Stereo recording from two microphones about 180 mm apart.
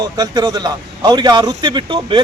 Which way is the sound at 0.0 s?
20° right (ahead or behind).